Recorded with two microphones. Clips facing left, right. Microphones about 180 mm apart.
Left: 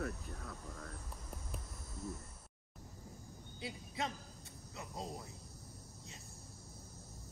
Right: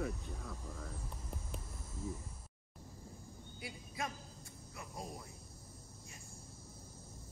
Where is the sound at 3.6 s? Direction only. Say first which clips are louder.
Left 2 dB; 25° left (ahead or behind).